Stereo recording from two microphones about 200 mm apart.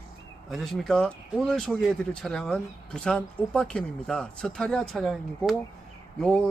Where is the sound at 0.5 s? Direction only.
Centre (ahead or behind).